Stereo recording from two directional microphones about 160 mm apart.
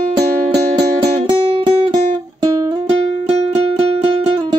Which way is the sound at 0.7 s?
30° right (ahead or behind).